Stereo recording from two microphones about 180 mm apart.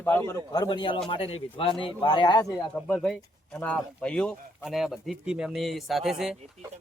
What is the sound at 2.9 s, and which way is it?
Speech, 5° left (ahead or behind).